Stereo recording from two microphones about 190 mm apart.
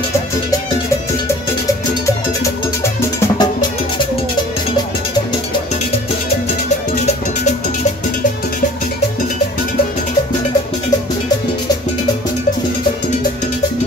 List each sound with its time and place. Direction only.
2.0 s music: 15° left (ahead or behind)